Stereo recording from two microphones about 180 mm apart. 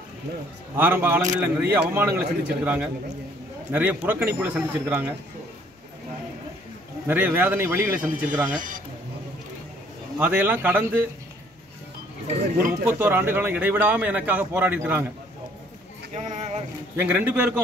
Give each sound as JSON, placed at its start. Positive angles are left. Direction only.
{"t": 0.7, "sound": "a man's voice", "side_deg": -10}
{"t": 7.1, "sound": "a man's voice", "side_deg": -10}
{"t": 8.5, "sound": "speech", "side_deg": -45}
{"t": 10.1, "sound": "a man's voice", "side_deg": -10}
{"t": 13.0, "sound": "a man's voice", "side_deg": -10}
{"t": 16.2, "sound": "speech", "side_deg": -35}
{"t": 16.9, "sound": "a man's voice", "side_deg": -10}